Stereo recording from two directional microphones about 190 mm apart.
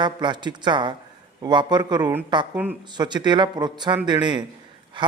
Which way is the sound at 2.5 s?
10° right (ahead or behind).